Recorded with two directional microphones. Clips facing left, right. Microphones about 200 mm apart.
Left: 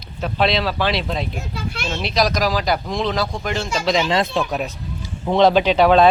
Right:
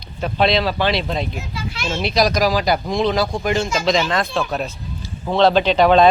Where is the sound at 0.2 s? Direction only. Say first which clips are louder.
Right 2 dB; centre (ahead or behind).